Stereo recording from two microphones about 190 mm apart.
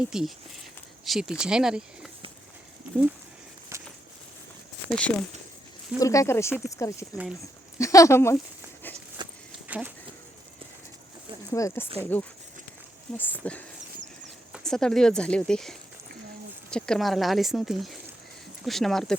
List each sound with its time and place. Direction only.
0.0 s speech: 5° right (ahead or behind)
3.7 s a sound: 15° right (ahead or behind)
4.9 s speech: 5° left (ahead or behind)
6.0 s speech: 15° left (ahead or behind)
9.2 s vehicle: 25° right (ahead or behind)
9.6 s speech: 10° right (ahead or behind)
11.5 s speech: 15° left (ahead or behind)
16.7 s speech: 5° left (ahead or behind)